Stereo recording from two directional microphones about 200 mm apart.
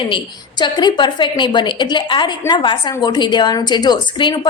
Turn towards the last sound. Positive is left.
turn(degrees=20)  # may be behind; listen again after turning